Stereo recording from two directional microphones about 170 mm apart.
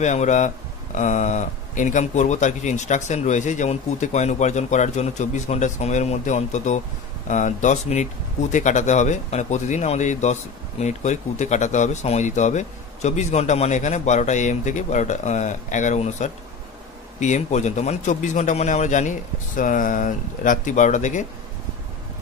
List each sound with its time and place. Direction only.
0.0 s speech: 45° left (ahead or behind)